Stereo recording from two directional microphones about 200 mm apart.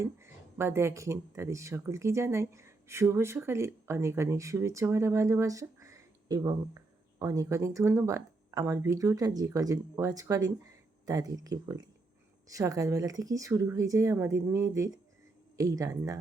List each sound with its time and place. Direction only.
0.0 s speech: 15° right (ahead or behind)